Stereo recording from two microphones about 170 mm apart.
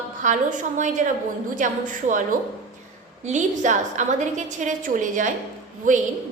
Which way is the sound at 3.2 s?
45° right (ahead or behind).